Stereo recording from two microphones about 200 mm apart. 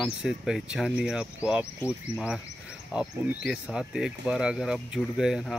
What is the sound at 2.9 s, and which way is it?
Speech, 5° right (ahead or behind).